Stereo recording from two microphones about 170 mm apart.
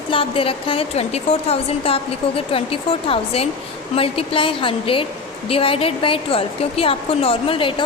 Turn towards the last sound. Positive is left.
turn(degrees=30)  # may be behind; listen again after turning